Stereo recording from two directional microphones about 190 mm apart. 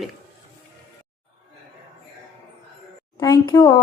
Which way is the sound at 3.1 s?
20° left (ahead or behind).